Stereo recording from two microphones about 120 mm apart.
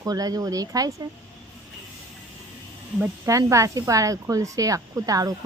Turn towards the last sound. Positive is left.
turn(degrees=-30)  # may be behind; listen again after turning